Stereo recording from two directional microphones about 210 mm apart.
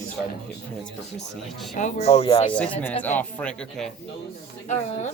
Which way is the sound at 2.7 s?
10° left (ahead or behind).